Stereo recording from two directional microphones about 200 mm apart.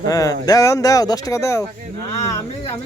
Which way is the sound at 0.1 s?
15° left (ahead or behind).